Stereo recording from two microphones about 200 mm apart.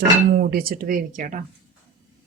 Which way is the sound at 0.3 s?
45° right (ahead or behind).